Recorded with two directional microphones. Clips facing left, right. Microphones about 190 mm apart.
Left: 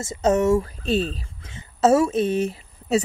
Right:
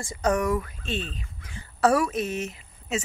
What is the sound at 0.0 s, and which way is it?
Speech, 25° left (ahead or behind).